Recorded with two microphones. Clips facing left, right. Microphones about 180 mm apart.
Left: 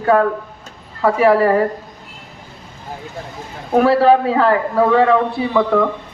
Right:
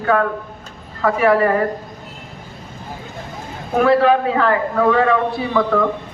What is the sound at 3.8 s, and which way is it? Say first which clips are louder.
Speech: left 1 dB; 35° left (ahead or behind).